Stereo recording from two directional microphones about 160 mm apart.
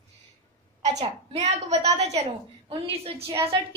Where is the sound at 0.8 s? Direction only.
45° right (ahead or behind).